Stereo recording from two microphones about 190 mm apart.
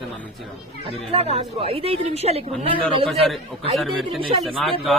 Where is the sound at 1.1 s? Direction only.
35° right (ahead or behind).